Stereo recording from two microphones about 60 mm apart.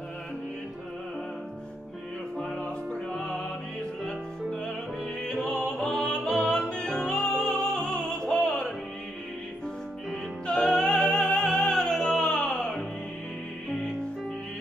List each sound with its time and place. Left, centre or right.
2.3 s music: centre
2.6 s music: centre
10.4 s music: centre